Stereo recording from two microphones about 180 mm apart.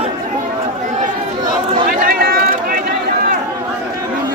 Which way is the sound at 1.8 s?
55° right (ahead or behind).